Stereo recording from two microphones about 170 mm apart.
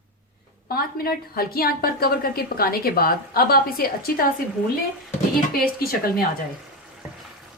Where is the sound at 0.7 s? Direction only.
60° left (ahead or behind).